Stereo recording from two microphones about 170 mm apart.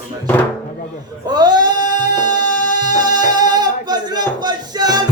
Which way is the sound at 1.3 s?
25° right (ahead or behind).